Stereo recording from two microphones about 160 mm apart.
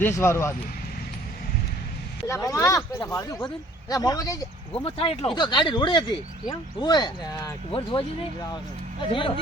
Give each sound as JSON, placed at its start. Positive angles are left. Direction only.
{"t": 0.0, "sound": "speech", "side_deg": 15}
{"t": 2.2, "sound": "speech", "side_deg": 20}
{"t": 4.8, "sound": "speech", "side_deg": 35}
{"t": 9.0, "sound": "speech", "side_deg": 35}